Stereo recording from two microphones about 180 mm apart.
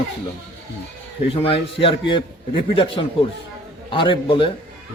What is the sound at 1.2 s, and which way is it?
A man's voice, 30° left (ahead or behind).